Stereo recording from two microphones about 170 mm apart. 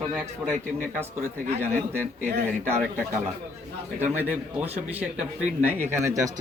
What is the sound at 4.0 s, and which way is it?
Speech, 10° right (ahead or behind).